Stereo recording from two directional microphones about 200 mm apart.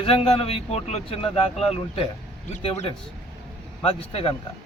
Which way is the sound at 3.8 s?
30° left (ahead or behind).